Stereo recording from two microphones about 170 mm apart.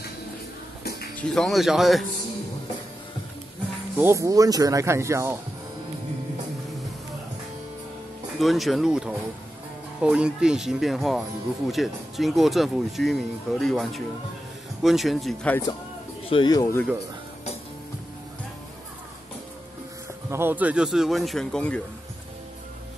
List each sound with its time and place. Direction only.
1.1 s speech: 5° left (ahead or behind)
4.0 s speech: 15° right (ahead or behind)
8.4 s speech: centre (ahead or behind)
16.3 s speech: 25° left (ahead or behind)
20.2 s speech: 15° right (ahead or behind); by 21.8 s 5° left (ahead or behind)